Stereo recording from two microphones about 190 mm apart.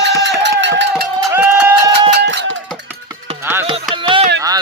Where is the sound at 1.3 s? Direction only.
10° right (ahead or behind).